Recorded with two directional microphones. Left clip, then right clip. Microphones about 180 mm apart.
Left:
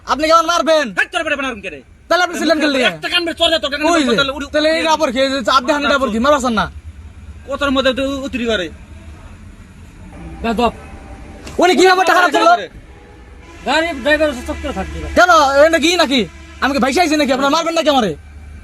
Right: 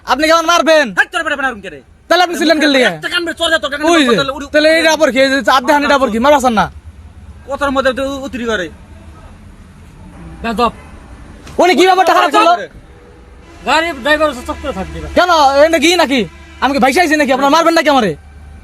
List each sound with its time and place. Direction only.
0.0 s a man's voice: 55° right (ahead or behind)
0.9 s a man's voice: 30° right (ahead or behind)
2.0 s a man's voice: 65° right (ahead or behind)
3.2 s a man's voice: 25° right (ahead or behind)
3.8 s a man's voice: 65° right (ahead or behind)
7.5 s a man's voice: 30° right (ahead or behind)
10.4 s a man's voice: 20° right (ahead or behind)
11.6 s a man's voice: 55° right (ahead or behind)
12.2 s a man's voice: 20° right (ahead or behind)
13.7 s a man's voice: 25° right (ahead or behind)
15.1 s a man's voice: 50° right (ahead or behind)